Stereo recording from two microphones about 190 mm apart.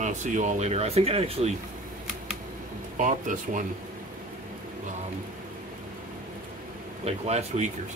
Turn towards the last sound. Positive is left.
turn(degrees=-35)  # may be behind; listen again after turning